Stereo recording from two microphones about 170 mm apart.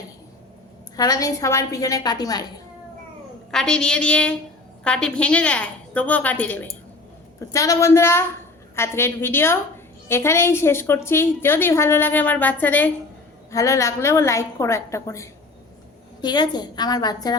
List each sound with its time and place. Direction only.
0.9 s a woman's voice: 20° left (ahead or behind)
3.5 s a woman's voice: 5° left (ahead or behind); by 17.3 s 25° left (ahead or behind)